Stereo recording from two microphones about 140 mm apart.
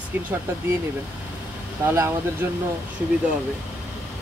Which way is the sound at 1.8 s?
20° right (ahead or behind).